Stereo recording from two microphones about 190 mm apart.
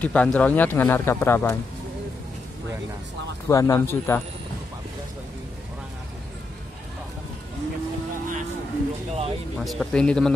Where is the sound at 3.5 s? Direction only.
15° left (ahead or behind).